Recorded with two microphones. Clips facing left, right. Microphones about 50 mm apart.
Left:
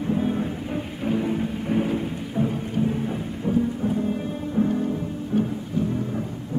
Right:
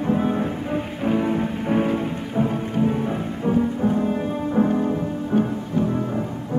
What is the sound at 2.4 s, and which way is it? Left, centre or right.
Rain, right.